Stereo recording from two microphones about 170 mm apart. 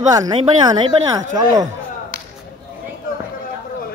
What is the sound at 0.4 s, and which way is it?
Speech, 30° right (ahead or behind).